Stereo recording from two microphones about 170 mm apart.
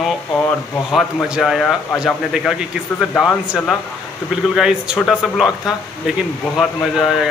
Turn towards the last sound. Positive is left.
turn(degrees=0)  # may be behind; listen again after turning